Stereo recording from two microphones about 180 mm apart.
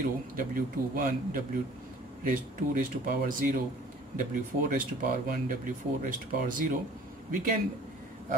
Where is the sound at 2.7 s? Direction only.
50° right (ahead or behind).